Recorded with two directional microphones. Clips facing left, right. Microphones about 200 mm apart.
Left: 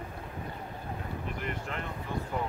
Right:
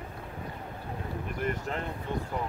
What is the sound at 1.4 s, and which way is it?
Boat, 40° right (ahead or behind).